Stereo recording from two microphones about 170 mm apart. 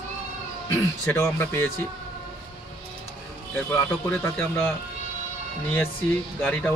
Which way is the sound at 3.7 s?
10° left (ahead or behind).